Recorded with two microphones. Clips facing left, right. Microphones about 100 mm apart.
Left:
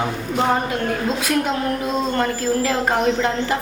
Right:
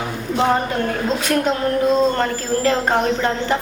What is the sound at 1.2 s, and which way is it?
A woman's voice, 5° left (ahead or behind).